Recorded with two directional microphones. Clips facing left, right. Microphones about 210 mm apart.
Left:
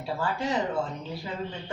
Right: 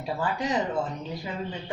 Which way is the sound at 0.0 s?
15° right (ahead or behind).